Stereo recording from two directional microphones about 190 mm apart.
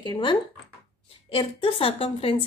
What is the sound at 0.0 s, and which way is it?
A woman's voice, 25° left (ahead or behind).